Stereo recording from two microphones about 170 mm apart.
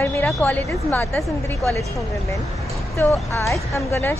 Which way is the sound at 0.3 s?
10° left (ahead or behind).